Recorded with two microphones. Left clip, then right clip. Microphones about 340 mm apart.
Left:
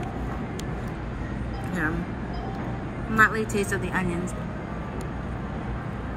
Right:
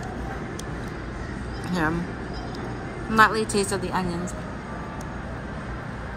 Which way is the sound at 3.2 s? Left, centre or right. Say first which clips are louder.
Right 2 dB; centre.